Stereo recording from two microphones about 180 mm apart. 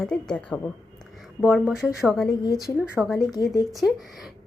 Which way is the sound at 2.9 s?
5° right (ahead or behind).